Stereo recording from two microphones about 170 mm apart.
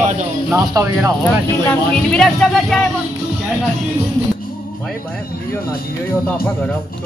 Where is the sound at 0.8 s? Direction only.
20° right (ahead or behind).